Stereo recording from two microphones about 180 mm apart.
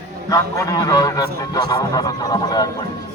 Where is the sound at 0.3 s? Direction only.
20° left (ahead or behind).